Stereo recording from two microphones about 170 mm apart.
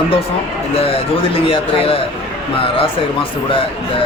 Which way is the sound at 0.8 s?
35° left (ahead or behind).